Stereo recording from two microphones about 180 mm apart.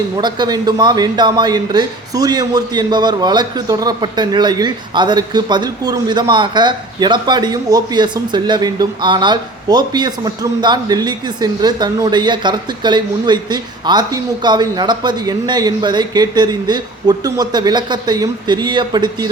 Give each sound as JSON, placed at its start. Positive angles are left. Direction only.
{"t": 0.2, "sound": "speech", "side_deg": -25}